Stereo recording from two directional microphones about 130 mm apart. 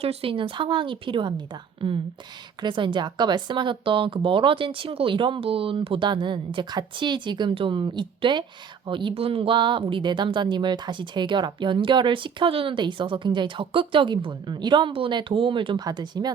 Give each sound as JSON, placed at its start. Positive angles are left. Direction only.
{"t": 0.0, "sound": "a woman's voice", "side_deg": -50}